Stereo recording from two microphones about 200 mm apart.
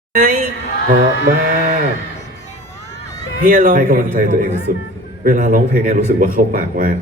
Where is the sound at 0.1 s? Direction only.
45° right (ahead or behind).